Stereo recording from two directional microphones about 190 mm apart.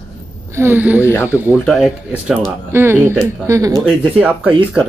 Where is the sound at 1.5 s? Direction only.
Centre (ahead or behind).